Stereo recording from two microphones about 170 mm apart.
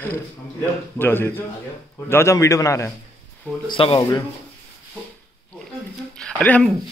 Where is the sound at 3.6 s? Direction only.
30° left (ahead or behind).